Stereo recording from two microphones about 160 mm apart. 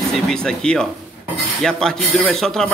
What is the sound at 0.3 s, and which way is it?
Speech, 5° left (ahead or behind).